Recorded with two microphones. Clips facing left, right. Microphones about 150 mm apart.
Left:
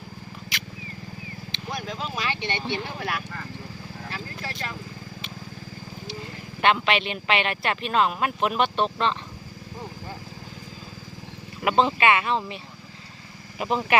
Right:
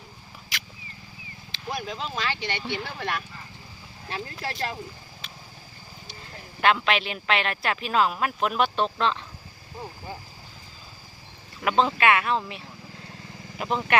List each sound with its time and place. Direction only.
0.5 s wild animals: centre (ahead or behind)
1.5 s a sound: centre (ahead or behind)
2.2 s speech: 20° left (ahead or behind)
6.6 s speech: centre (ahead or behind)
11.6 s speech: 5° left (ahead or behind)
13.6 s speech: 5° left (ahead or behind)